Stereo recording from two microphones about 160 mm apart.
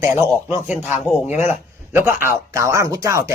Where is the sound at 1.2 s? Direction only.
10° right (ahead or behind).